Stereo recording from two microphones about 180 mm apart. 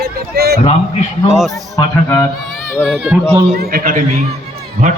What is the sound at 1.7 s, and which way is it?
Speech, 15° left (ahead or behind).